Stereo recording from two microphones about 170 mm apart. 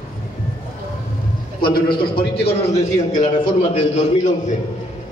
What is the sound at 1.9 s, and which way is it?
Speech, 30° left (ahead or behind).